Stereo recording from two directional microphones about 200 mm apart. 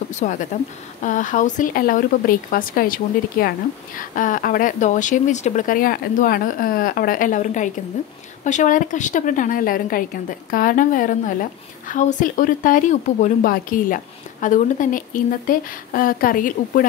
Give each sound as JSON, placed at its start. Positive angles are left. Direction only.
{"t": 0.1, "sound": "a woman's voice", "side_deg": 35}